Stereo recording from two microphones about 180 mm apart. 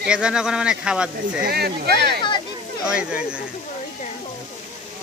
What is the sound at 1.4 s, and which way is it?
Speech, 60° right (ahead or behind).